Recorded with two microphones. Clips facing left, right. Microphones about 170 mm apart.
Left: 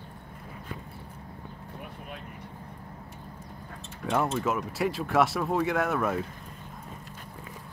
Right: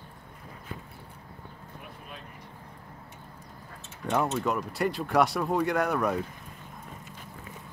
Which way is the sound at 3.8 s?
Centre (ahead or behind).